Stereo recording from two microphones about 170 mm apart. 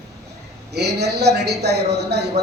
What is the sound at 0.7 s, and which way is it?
A man's voice, 75° right (ahead or behind).